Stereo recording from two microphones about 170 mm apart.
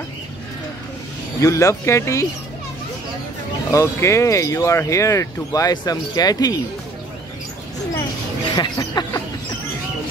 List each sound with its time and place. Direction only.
1.4 s speech: 20° left (ahead or behind)
3.7 s speech: 15° left (ahead or behind)
8.5 s speech: 25° left (ahead or behind)